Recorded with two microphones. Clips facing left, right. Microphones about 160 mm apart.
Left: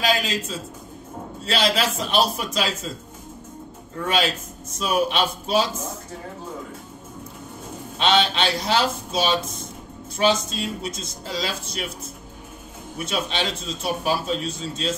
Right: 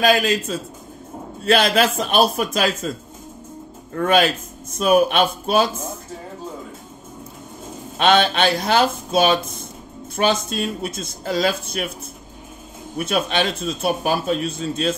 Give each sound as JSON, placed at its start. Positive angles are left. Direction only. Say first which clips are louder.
{"t": 0.0, "sound": "a man's voice", "louder": "right 6 dB", "side_deg": -55}
{"t": 3.9, "sound": "speech", "louder": "right 6 dB", "side_deg": -55}
{"t": 8.0, "sound": "speech", "louder": "right 4 dB", "side_deg": -55}
{"t": 12.9, "sound": "speech", "louder": "right 6 dB", "side_deg": -55}